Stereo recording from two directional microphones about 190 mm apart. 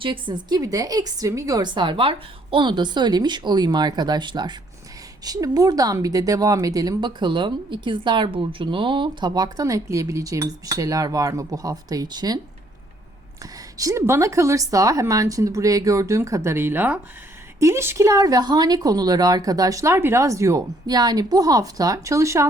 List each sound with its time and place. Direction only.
0.0 s speech: 25° right (ahead or behind)
13.4 s a woman's voice: 20° right (ahead or behind)